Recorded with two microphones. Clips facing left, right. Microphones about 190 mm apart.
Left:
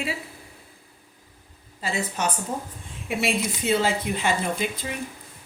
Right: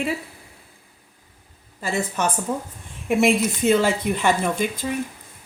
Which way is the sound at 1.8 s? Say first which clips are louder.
Right 3 dB; 55° right (ahead or behind).